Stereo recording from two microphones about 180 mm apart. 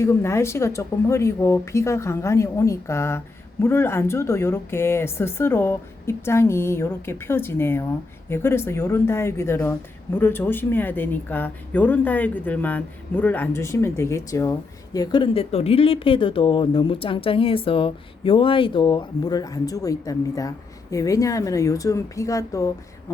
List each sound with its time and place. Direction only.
0.0 s speech: 15° left (ahead or behind)